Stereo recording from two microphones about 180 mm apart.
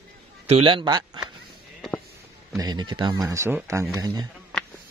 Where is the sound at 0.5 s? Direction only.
30° right (ahead or behind).